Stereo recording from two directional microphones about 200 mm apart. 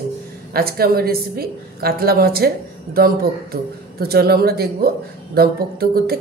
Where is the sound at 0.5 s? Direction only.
50° right (ahead or behind).